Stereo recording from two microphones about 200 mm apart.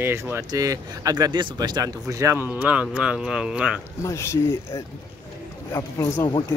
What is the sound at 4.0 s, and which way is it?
Speech, 15° left (ahead or behind).